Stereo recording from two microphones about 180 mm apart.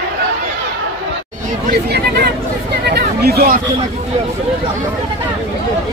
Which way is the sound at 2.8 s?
60° right (ahead or behind).